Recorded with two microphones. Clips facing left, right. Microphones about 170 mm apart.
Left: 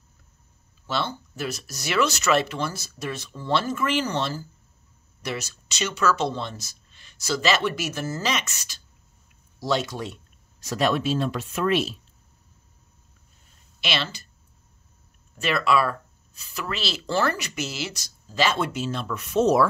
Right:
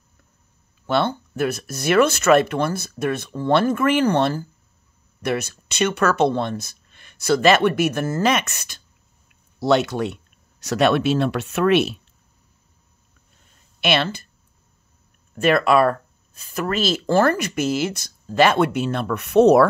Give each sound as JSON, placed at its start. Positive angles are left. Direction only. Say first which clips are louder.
{"t": 0.8, "sound": "speech", "louder": "right 8 dB", "side_deg": -55}
{"t": 13.7, "sound": "speech", "louder": "right 8 dB", "side_deg": -55}
{"t": 15.3, "sound": "speech", "louder": "right 6 dB", "side_deg": -50}